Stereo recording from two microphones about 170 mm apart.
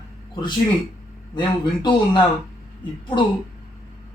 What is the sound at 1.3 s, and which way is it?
Speech, 25° left (ahead or behind).